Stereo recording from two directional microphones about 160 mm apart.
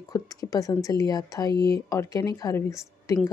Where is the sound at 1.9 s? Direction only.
20° left (ahead or behind).